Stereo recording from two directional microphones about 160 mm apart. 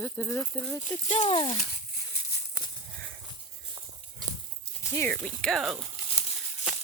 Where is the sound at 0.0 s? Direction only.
10° left (ahead or behind).